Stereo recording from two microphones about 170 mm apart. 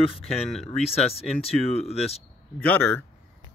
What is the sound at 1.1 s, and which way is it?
Speech, 35° left (ahead or behind).